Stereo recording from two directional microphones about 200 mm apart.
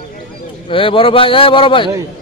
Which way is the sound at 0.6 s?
25° left (ahead or behind).